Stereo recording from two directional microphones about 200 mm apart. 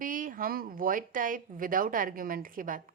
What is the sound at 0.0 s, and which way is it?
Speech, 40° right (ahead or behind).